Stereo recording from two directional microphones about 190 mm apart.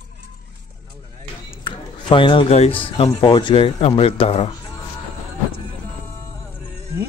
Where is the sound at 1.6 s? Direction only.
25° left (ahead or behind).